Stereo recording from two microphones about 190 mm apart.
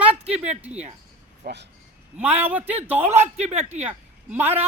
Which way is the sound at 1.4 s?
65° right (ahead or behind).